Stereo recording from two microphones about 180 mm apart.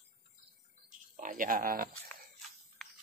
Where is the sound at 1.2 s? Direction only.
50° right (ahead or behind).